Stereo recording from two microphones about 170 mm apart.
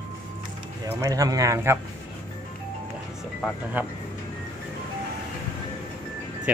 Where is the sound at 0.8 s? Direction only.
20° right (ahead or behind).